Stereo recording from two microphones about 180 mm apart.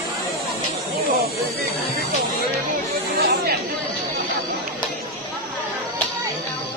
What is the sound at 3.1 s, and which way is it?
Chatter, 60° right (ahead or behind).